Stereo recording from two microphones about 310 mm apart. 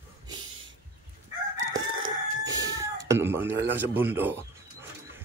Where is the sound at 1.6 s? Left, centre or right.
Right.